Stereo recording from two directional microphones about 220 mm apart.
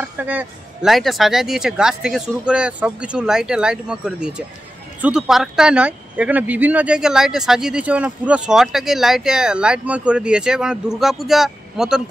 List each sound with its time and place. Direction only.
0.2 s speech: 5° right (ahead or behind)